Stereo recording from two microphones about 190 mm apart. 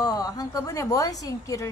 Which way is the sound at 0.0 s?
20° left (ahead or behind).